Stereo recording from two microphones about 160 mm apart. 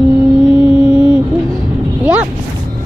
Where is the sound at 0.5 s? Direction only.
10° right (ahead or behind).